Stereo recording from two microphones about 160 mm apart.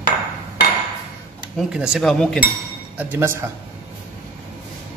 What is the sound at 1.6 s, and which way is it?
Speech, 5° right (ahead or behind).